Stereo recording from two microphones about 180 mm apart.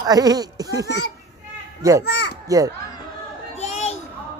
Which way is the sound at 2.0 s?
70° left (ahead or behind).